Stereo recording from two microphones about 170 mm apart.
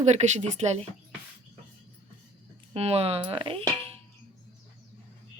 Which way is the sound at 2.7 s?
35° right (ahead or behind).